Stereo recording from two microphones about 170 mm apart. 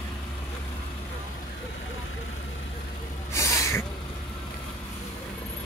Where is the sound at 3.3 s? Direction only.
15° left (ahead or behind).